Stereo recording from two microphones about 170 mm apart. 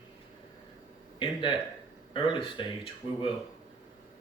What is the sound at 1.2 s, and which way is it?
Speech, 30° left (ahead or behind).